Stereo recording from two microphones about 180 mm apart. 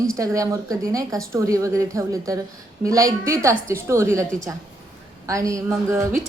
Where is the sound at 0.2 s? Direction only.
20° right (ahead or behind).